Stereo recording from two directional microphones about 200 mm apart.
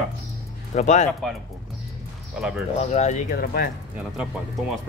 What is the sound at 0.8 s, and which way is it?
Speech, 35° left (ahead or behind).